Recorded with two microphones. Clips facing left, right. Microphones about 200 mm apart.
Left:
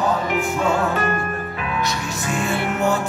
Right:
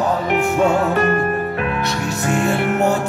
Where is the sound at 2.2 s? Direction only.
60° right (ahead or behind).